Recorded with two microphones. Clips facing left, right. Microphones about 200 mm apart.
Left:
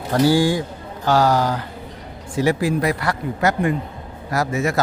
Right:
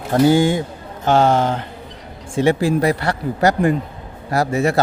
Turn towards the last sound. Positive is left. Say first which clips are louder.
# right 3 dB
turn(degrees=-30)  # may be behind; listen again after turning